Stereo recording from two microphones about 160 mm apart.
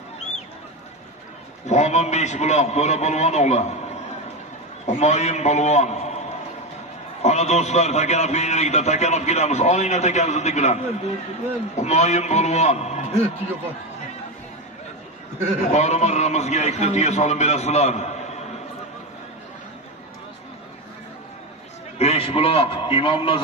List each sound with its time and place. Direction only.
1.7 s a man's voice: 45° left (ahead or behind)
4.8 s a man's voice: 45° left (ahead or behind)
7.2 s a man's voice: 45° left (ahead or behind)
15.6 s a man's voice: 45° left (ahead or behind)
21.9 s a man's voice: 40° left (ahead or behind)